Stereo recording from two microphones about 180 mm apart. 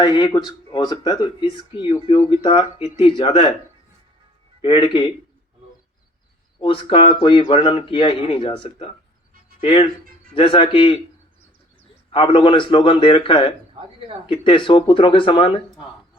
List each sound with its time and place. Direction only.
0.0 s speech: 25° left (ahead or behind)
4.6 s speech: 25° left (ahead or behind)
6.6 s speech: 30° left (ahead or behind)
12.1 s speech: 25° left (ahead or behind)